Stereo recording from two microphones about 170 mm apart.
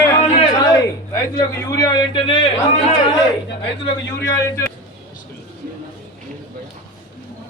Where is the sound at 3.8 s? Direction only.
20° left (ahead or behind).